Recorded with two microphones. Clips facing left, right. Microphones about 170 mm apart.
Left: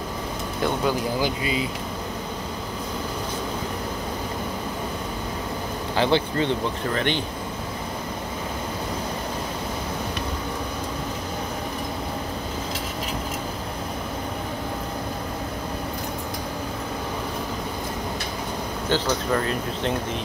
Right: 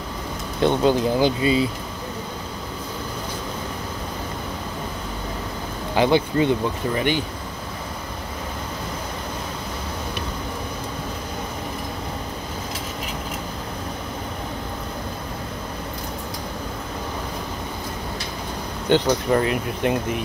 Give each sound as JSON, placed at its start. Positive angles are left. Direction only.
{"t": 0.6, "sound": "speech", "side_deg": -25}
{"t": 5.9, "sound": "speech", "side_deg": -15}
{"t": 18.9, "sound": "speech", "side_deg": -20}